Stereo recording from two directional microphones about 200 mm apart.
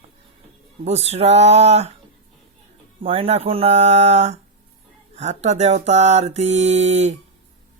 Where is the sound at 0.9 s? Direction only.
35° right (ahead or behind).